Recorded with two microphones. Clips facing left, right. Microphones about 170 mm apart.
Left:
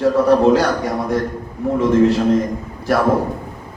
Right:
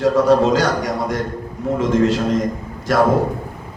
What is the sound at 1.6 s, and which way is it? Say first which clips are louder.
Speech: left 2 dB; 65° left (ahead or behind).